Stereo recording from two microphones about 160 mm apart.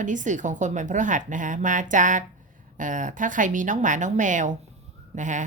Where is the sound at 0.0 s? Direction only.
50° right (ahead or behind).